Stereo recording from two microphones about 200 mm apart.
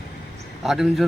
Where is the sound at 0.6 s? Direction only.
Centre (ahead or behind).